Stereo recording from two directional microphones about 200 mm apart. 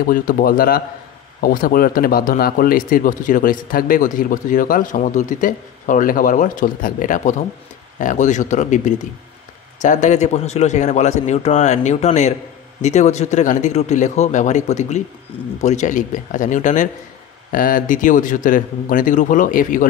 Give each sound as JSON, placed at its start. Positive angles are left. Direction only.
{"t": 0.1, "sound": "a man's voice", "side_deg": 45}